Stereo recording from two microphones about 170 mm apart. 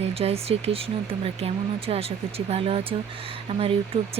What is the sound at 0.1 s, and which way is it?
Speech, 35° right (ahead or behind).